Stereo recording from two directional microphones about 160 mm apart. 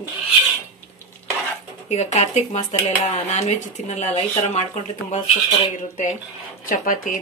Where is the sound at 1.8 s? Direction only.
45° left (ahead or behind); by 7.1 s 60° left (ahead or behind).